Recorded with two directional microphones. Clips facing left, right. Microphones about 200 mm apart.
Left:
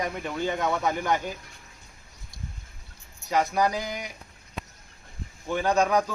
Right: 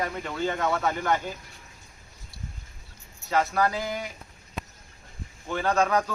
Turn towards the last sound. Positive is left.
turn(degrees=15)  # may be behind; listen again after turning